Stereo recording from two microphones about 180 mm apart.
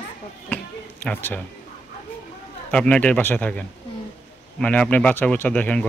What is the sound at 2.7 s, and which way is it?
A man's voice, 5° left (ahead or behind).